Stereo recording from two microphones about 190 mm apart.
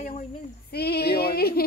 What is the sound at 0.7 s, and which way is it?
Speech, 55° left (ahead or behind).